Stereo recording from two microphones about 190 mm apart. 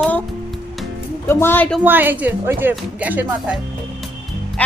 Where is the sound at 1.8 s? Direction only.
10° right (ahead or behind).